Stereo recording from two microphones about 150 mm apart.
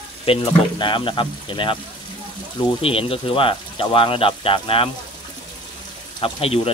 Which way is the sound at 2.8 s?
40° left (ahead or behind).